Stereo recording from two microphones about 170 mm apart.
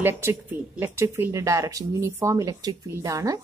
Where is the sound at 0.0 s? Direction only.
15° right (ahead or behind).